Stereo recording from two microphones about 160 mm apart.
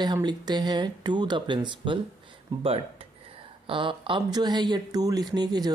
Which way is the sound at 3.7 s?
30° right (ahead or behind).